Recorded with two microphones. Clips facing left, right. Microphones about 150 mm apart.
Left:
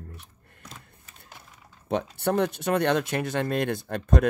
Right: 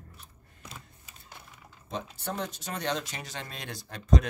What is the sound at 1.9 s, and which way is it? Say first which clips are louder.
Speech: left 10 dB; 65° left (ahead or behind).